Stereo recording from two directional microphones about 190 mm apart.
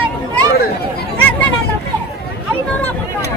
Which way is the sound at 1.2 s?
10° left (ahead or behind).